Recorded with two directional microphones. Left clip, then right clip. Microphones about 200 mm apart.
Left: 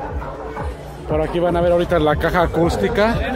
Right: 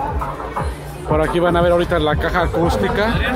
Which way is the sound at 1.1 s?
5° left (ahead or behind).